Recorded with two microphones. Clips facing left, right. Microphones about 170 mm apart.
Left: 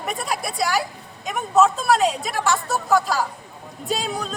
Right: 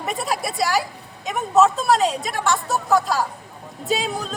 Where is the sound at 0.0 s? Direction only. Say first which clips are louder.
Right 2 dB; centre (ahead or behind).